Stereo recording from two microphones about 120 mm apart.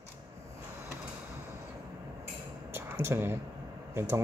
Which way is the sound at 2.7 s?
20° right (ahead or behind).